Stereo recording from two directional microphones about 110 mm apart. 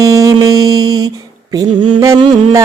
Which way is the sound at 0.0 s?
30° right (ahead or behind).